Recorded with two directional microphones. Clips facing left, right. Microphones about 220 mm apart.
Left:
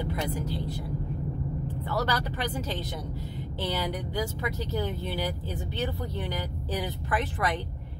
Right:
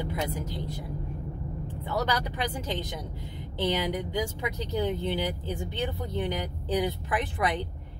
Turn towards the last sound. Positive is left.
turn(degrees=-15)  # may be behind; listen again after turning